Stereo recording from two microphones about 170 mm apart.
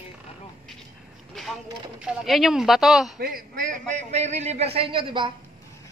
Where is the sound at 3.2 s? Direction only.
55° right (ahead or behind); by 5.3 s 30° right (ahead or behind).